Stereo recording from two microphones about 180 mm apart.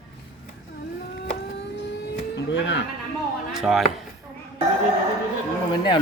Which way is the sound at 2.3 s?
90° left.